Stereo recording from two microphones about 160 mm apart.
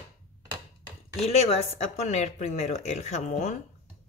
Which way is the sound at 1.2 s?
40° left (ahead or behind).